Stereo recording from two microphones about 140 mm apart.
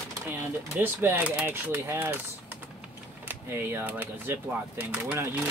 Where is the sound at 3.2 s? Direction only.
15° right (ahead or behind).